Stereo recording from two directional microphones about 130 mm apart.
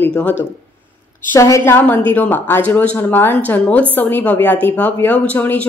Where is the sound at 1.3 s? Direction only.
25° left (ahead or behind).